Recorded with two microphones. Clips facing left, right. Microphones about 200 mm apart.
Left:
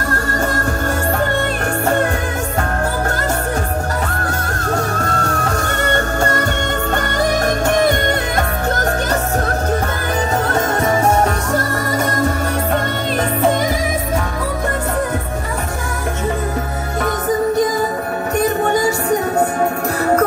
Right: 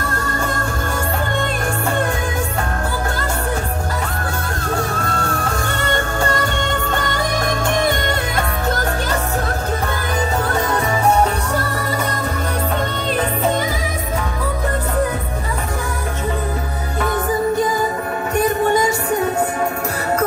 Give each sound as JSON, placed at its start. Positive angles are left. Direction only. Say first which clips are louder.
{"t": 5.0, "sound": "music", "louder": "left 2 dB", "side_deg": 45}
{"t": 10.5, "sound": "music", "louder": "left 3 dB", "side_deg": 45}